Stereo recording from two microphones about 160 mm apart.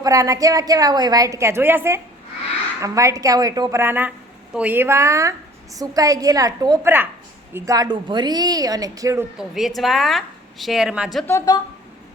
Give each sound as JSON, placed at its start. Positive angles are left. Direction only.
{"t": 0.0, "sound": "a woman's voice", "side_deg": -20}
{"t": 9.4, "sound": "a woman's voice", "side_deg": 0}
{"t": 11.3, "sound": "a woman's voice", "side_deg": 20}